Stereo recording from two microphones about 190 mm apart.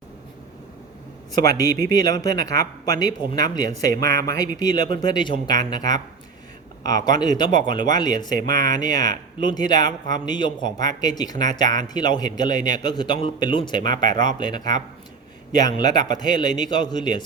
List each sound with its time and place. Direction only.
1.4 s speech: 20° left (ahead or behind)